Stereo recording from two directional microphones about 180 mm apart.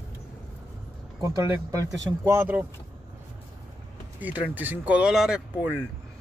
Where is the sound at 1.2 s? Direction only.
20° right (ahead or behind).